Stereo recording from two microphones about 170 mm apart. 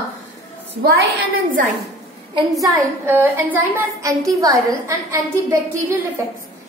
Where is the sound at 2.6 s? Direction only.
15° right (ahead or behind).